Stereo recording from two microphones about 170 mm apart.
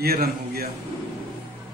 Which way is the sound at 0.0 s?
65° right (ahead or behind).